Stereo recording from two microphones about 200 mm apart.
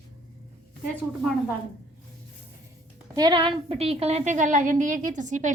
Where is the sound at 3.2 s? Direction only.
20° right (ahead or behind); by 5.5 s 40° right (ahead or behind).